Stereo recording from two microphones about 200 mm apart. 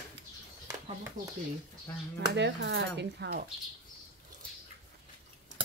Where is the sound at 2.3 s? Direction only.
60° right (ahead or behind).